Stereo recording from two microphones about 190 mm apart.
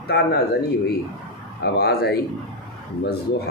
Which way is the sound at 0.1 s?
60° left (ahead or behind).